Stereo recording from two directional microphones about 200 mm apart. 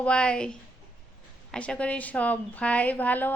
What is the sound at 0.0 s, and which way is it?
A woman's voice, 5° left (ahead or behind).